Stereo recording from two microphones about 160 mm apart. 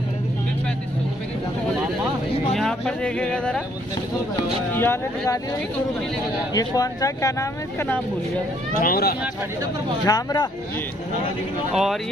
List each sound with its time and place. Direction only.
2.5 s speech: centre (ahead or behind)
4.7 s speech: 15° left (ahead or behind)
6.5 s speech: 25° left (ahead or behind)
8.7 s speech: 70° left (ahead or behind)
10.0 s speech: 25° left (ahead or behind)
11.7 s speech: centre (ahead or behind)